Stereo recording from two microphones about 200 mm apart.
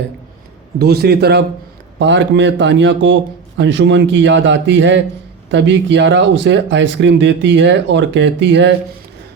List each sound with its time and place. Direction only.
0.8 s speech: 55° right (ahead or behind)